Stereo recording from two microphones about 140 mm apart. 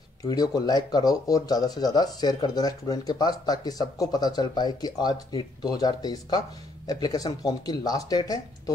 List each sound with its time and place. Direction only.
0.2 s speech: 30° left (ahead or behind)